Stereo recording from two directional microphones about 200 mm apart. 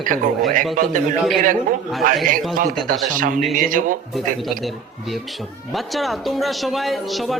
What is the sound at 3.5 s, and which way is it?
Speech, 40° right (ahead or behind).